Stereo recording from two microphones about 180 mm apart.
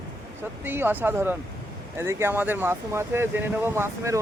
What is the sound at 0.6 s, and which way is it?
Speech, 10° right (ahead or behind).